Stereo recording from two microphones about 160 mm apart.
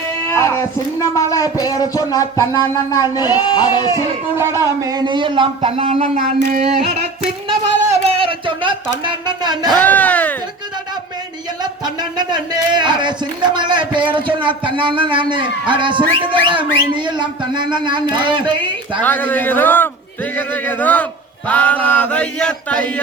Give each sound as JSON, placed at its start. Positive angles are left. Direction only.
{"t": 0.3, "sound": "speech", "side_deg": 15}
{"t": 4.4, "sound": "speech", "side_deg": -15}
{"t": 6.1, "sound": "a sound", "side_deg": -50}
{"t": 9.7, "sound": "speech", "side_deg": 10}
{"t": 12.1, "sound": "speech", "side_deg": -30}
{"t": 19.0, "sound": "a man's voice", "side_deg": 10}